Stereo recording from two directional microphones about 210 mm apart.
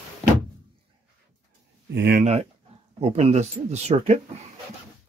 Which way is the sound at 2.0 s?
50° right (ahead or behind).